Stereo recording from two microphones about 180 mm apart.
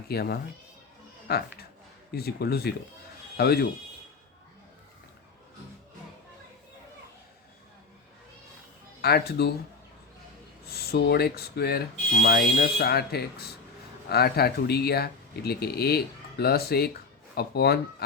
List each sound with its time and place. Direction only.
0.1 s speech: 60° left (ahead or behind)
9.0 s speech: 60° left (ahead or behind)
10.7 s speech: 60° left (ahead or behind)